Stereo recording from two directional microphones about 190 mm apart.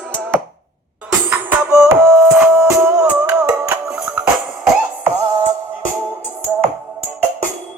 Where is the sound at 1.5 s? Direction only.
15° right (ahead or behind).